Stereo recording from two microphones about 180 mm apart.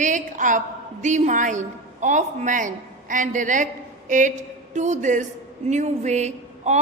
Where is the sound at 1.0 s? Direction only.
40° right (ahead or behind).